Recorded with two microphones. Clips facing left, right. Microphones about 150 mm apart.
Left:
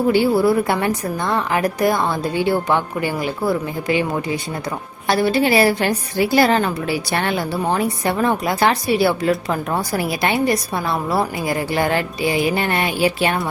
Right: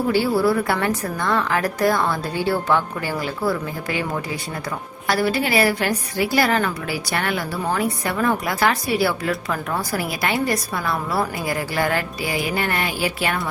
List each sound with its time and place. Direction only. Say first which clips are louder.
0.1 s a woman's voice: left 3 dB; 20° left (ahead or behind)
5.0 s a woman's voice: left 4 dB; 25° left (ahead or behind)